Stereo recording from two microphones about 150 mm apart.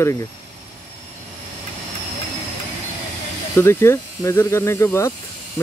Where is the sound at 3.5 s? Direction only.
15° left (ahead or behind).